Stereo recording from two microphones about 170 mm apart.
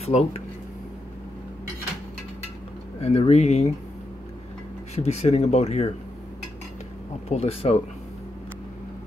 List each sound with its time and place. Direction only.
0.0 s speech: 40° left (ahead or behind)
3.0 s speech: 35° left (ahead or behind)
4.9 s speech: 40° left (ahead or behind)
7.2 s speech: 40° left (ahead or behind)